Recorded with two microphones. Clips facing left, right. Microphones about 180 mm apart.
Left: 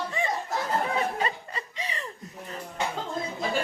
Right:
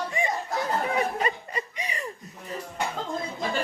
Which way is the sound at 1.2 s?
15° right (ahead or behind).